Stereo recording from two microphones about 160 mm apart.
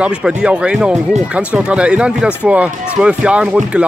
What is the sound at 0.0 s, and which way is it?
Speech, 5° right (ahead or behind).